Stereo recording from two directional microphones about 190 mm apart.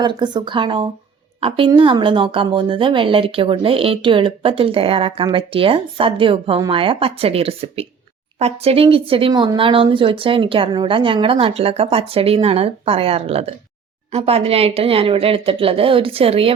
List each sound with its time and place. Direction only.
0.0 s speech: 25° right (ahead or behind)